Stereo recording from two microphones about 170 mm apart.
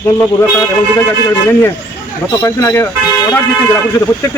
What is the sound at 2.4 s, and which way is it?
Speech, 15° left (ahead or behind).